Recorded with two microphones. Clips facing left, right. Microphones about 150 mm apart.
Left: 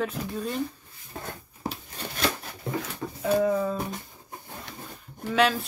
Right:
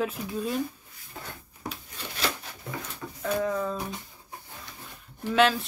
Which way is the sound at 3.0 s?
30° left (ahead or behind).